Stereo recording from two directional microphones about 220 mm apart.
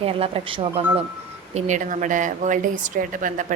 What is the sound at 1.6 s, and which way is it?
A woman's voice, 35° right (ahead or behind).